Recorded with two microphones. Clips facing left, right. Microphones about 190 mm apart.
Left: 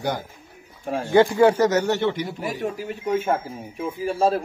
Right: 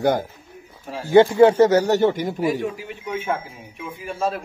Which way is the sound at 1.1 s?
25° right (ahead or behind).